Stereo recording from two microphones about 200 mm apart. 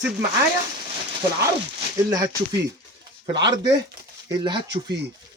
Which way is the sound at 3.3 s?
20° right (ahead or behind).